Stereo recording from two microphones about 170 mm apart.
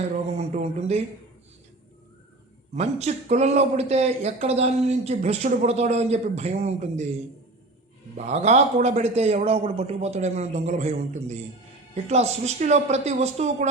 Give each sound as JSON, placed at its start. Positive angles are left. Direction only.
{"t": 0.0, "sound": "speech", "side_deg": -40}
{"t": 2.7, "sound": "speech", "side_deg": -40}
{"t": 8.1, "sound": "speech", "side_deg": -40}